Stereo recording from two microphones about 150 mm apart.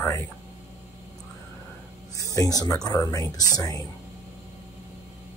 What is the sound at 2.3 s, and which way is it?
Speech, 25° left (ahead or behind).